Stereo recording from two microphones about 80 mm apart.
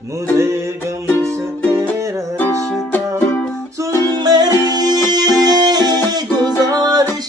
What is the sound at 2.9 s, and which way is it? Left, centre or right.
Music, left.